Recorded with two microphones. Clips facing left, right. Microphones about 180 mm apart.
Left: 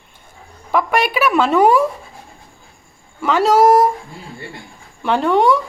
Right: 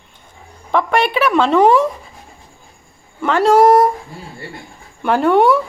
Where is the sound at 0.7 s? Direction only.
5° left (ahead or behind).